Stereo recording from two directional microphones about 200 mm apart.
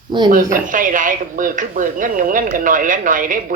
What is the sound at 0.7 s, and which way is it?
A woman's voice, 40° right (ahead or behind).